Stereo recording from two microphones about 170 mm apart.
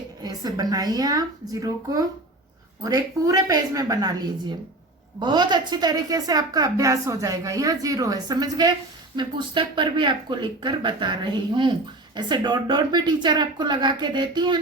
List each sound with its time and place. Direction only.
0.2 s a woman's voice: 25° right (ahead or behind)